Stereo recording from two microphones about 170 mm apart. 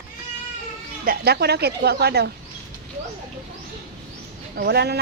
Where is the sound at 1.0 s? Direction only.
65° right (ahead or behind).